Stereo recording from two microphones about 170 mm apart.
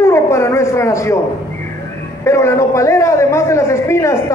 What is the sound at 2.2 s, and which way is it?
A man's voice, 15° left (ahead or behind).